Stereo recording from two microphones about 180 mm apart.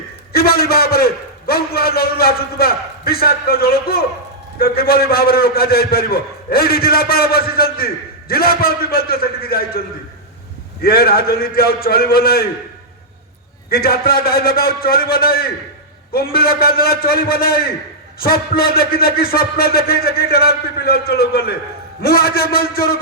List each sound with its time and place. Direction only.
0.3 s a man's voice: 55° left (ahead or behind)
10.8 s a man's voice: 60° left (ahead or behind)
13.7 s a man's voice: 55° left (ahead or behind)